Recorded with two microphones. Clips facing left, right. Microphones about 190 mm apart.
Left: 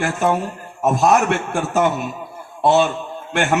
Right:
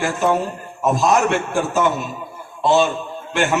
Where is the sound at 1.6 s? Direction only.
55° left (ahead or behind).